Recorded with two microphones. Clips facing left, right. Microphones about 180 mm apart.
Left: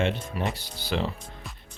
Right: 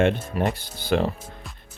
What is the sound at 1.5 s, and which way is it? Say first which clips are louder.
Music: even; centre (ahead or behind).